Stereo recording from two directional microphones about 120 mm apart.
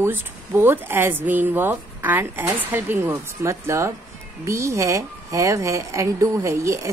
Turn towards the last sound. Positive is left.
turn(degrees=-25)  # may be behind; listen again after turning